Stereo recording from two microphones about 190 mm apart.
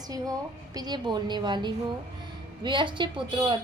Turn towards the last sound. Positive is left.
turn(degrees=-25)  # may be behind; listen again after turning